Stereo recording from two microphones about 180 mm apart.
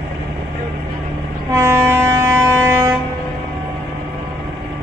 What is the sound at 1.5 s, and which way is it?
Train, 15° right (ahead or behind).